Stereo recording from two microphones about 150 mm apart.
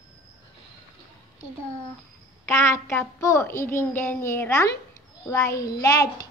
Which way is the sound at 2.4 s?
20° left (ahead or behind).